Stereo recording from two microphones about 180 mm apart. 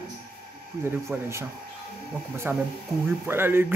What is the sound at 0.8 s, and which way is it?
Speech, 10° right (ahead or behind).